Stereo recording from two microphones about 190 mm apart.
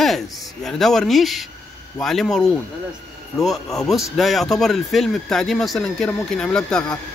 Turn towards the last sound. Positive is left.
turn(degrees=5)  # may be behind; listen again after turning